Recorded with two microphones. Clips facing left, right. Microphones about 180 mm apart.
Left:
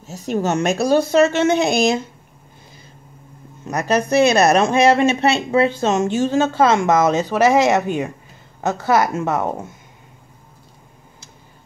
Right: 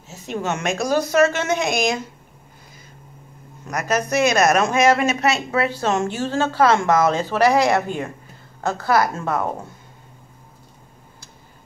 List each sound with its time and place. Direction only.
0.1 s a woman's voice: 40° left (ahead or behind)
3.6 s speech: 30° left (ahead or behind)